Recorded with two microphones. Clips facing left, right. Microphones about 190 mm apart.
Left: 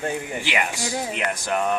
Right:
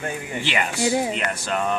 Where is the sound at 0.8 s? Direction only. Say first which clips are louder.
Right 6 dB; 15° right (ahead or behind).